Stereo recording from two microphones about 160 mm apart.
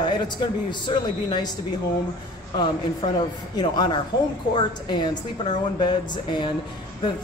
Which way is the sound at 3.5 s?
25° left (ahead or behind).